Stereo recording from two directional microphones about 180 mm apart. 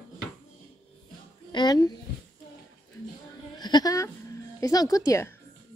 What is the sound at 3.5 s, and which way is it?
A woman's voice, 20° left (ahead or behind).